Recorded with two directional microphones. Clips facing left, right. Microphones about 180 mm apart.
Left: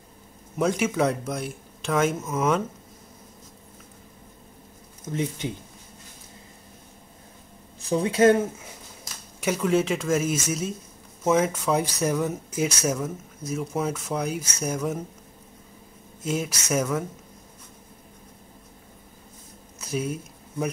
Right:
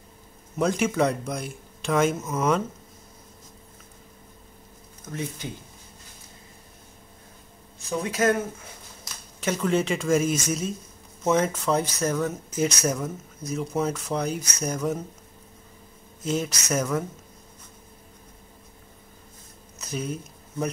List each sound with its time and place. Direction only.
0.6 s speech: centre (ahead or behind)
5.1 s speech: 20° left (ahead or behind)
7.9 s speech: 30° left (ahead or behind)
9.4 s speech: 5° left (ahead or behind)
16.3 s speech: 10° left (ahead or behind)
19.9 s speech: 5° left (ahead or behind)